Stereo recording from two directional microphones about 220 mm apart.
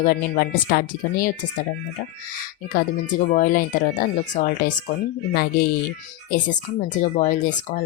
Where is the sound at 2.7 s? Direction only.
40° left (ahead or behind).